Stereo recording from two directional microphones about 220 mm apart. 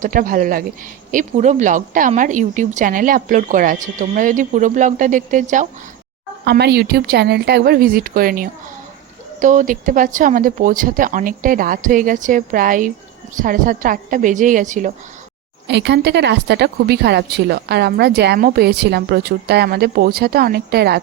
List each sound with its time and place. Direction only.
0.0 s a woman's voice: 40° right (ahead or behind)
6.4 s a woman's voice: 50° right (ahead or behind)
15.6 s speech: 55° right (ahead or behind)